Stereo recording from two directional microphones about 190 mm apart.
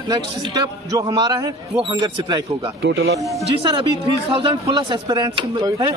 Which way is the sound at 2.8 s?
60° right (ahead or behind).